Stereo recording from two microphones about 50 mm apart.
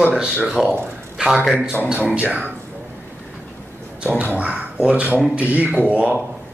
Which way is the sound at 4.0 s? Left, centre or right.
Right.